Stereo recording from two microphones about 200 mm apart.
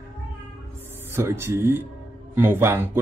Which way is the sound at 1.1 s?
10° right (ahead or behind).